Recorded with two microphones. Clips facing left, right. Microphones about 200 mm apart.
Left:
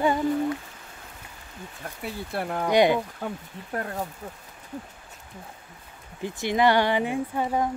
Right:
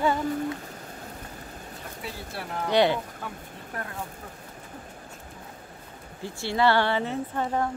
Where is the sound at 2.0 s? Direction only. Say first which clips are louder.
Left 7 dB; 55° left (ahead or behind).